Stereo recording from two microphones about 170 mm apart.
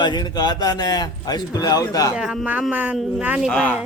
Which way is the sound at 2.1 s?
5° right (ahead or behind).